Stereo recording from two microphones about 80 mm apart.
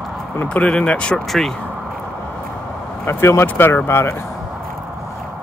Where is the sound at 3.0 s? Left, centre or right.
Left.